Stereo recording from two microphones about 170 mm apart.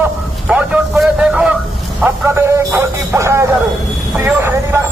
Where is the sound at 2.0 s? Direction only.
15° right (ahead or behind).